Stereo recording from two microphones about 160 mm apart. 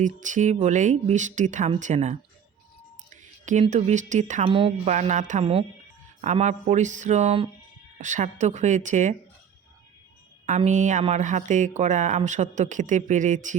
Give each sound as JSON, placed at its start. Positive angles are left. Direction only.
{"t": 0.2, "sound": "speech", "side_deg": -50}
{"t": 3.1, "sound": "a sound", "side_deg": -50}
{"t": 3.7, "sound": "speech", "side_deg": -45}
{"t": 4.4, "sound": "speech", "side_deg": -35}
{"t": 4.9, "sound": "speech", "side_deg": -45}
{"t": 7.9, "sound": "speech", "side_deg": -50}
{"t": 10.7, "sound": "speech", "side_deg": -50}